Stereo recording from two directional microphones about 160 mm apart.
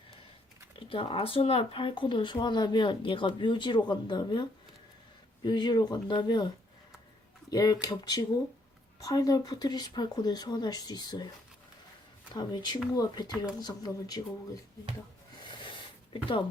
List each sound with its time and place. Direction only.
0.8 s speech: 35° left (ahead or behind)
7.5 s speech: 25° left (ahead or behind)
12.3 s speech: 25° left (ahead or behind)
15.4 s a sound: 30° left (ahead or behind)